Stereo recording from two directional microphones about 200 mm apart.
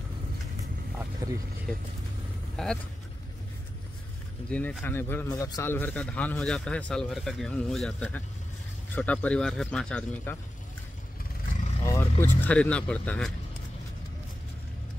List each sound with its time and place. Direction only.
1.2 s speech: 15° right (ahead or behind)
2.5 s speech: centre (ahead or behind)
4.5 s a man's voice: 5° left (ahead or behind)
11.8 s speech: 15° left (ahead or behind)